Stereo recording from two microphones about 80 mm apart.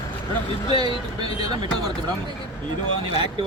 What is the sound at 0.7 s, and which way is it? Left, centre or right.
Speech, right.